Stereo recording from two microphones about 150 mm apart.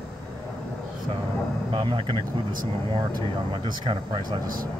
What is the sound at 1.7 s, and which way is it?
Speech, 30° right (ahead or behind).